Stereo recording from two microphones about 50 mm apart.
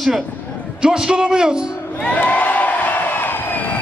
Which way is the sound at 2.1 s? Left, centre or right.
Left.